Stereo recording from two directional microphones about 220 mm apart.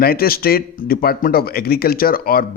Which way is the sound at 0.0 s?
45° left (ahead or behind).